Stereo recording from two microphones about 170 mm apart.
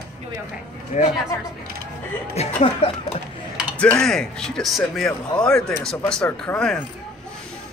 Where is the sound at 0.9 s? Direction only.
45° left (ahead or behind).